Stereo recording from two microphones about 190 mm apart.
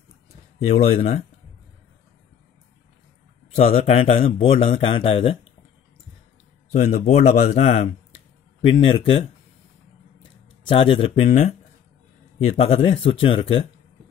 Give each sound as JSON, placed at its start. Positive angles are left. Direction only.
{"t": 0.7, "sound": "speech", "side_deg": 35}
{"t": 3.5, "sound": "speech", "side_deg": 35}
{"t": 6.7, "sound": "speech", "side_deg": 35}
{"t": 10.6, "sound": "speech", "side_deg": 30}